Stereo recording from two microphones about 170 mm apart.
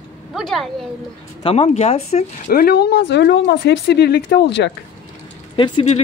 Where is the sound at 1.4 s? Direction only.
35° left (ahead or behind).